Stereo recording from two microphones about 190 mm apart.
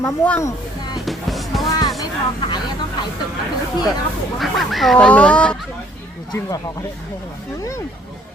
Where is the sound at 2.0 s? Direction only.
25° left (ahead or behind).